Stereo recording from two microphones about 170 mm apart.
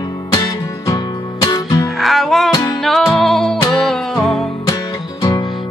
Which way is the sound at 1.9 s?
Centre (ahead or behind).